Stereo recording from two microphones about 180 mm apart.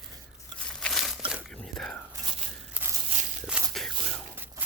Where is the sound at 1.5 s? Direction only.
5° left (ahead or behind).